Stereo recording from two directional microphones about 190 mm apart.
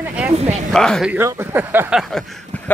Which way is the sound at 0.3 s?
35° right (ahead or behind).